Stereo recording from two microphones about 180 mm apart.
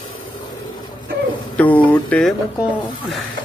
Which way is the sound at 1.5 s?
10° left (ahead or behind).